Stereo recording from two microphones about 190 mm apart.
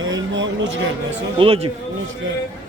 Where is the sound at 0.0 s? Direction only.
80° right.